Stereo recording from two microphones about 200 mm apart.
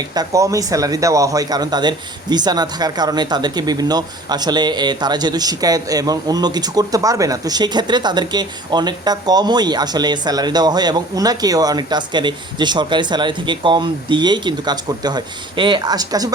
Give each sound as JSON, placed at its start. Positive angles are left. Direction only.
{"t": 0.1, "sound": "speech", "side_deg": -20}